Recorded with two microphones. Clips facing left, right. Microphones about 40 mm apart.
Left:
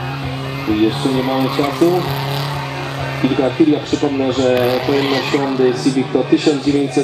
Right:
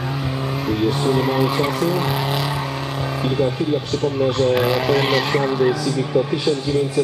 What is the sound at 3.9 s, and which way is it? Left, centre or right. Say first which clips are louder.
Speech: left 5 dB; left.